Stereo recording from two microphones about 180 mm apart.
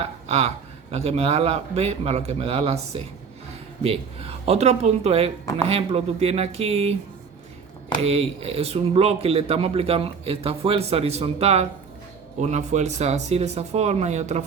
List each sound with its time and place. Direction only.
0.3 s speech: 35° right (ahead or behind)
8.0 s speech: 35° right (ahead or behind)